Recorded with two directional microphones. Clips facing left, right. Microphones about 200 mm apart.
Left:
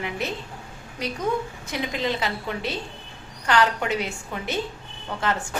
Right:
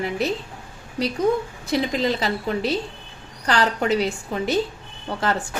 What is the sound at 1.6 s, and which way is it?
A woman's voice, 35° right (ahead or behind).